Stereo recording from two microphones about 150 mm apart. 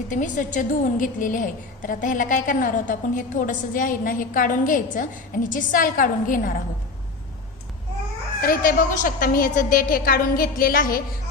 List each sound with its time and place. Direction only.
0.1 s a woman's voice: 60° left (ahead or behind)
8.4 s a woman's voice: 70° left (ahead or behind)